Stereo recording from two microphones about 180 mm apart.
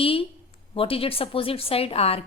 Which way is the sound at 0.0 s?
30° left (ahead or behind).